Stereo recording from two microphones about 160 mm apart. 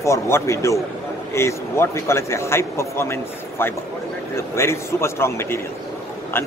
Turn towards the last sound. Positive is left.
turn(degrees=15)  # may be behind; listen again after turning